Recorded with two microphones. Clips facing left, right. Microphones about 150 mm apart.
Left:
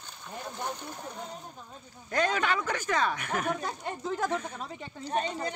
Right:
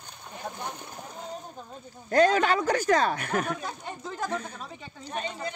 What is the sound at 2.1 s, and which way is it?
Speech, 35° right (ahead or behind).